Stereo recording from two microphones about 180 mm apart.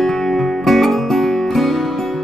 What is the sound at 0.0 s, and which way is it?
Music, centre (ahead or behind).